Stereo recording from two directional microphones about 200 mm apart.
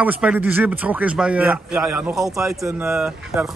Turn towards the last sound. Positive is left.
turn(degrees=0)  # may be behind; listen again after turning